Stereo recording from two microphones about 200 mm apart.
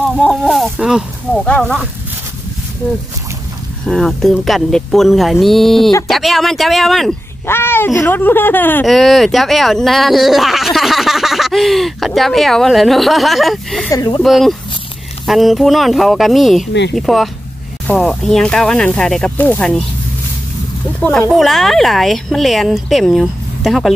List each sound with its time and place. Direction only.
0.0 s speech: centre (ahead or behind)
3.8 s speech: centre (ahead or behind)
7.4 s speech: 10° left (ahead or behind)
13.8 s speech: 20° left (ahead or behind)
14.2 s speech: centre (ahead or behind)
21.0 s speech: 5° left (ahead or behind)